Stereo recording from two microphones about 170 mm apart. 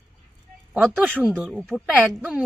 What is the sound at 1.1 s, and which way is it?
A woman's voice, 10° right (ahead or behind).